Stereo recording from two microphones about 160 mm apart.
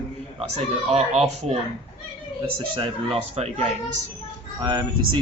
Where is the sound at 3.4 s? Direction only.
40° right (ahead or behind).